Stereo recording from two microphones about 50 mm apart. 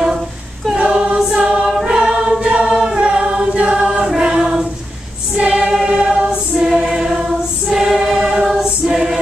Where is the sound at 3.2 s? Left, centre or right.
Right.